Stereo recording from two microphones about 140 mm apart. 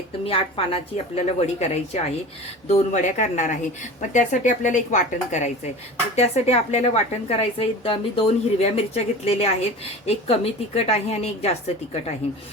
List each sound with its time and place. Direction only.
0.3 s a woman's voice: 40° left (ahead or behind); by 5.4 s 60° left (ahead or behind)
6.1 s a woman's voice: 50° left (ahead or behind)